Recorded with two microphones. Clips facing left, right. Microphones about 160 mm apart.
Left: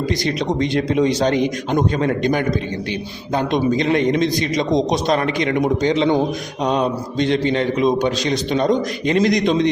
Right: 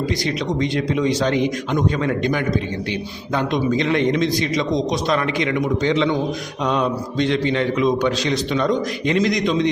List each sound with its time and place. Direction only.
0.3 s a man's voice: 50° left (ahead or behind)
3.7 s a man's voice: 45° left (ahead or behind)
5.9 s mantra: 35° left (ahead or behind)
8.0 s a man's voice: 40° left (ahead or behind)